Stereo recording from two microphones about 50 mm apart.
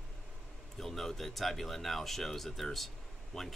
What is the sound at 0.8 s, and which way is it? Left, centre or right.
Speech, centre.